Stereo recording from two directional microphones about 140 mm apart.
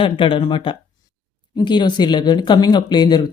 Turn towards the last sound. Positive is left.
turn(degrees=30)  # may be behind; listen again after turning